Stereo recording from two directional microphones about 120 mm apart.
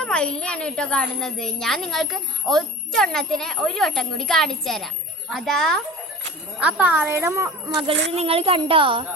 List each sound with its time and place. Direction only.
0.0 s a child's voice: 10° left (ahead or behind)
6.6 s speech: 10° right (ahead or behind)
7.8 s speech: 50° right (ahead or behind)